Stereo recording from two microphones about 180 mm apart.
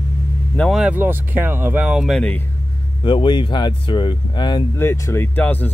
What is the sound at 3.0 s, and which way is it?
Speech, 25° left (ahead or behind).